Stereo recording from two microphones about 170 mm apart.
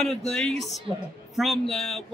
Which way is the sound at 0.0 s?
Centre (ahead or behind).